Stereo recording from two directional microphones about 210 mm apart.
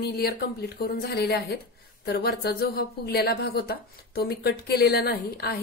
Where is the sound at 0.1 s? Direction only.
50° left (ahead or behind).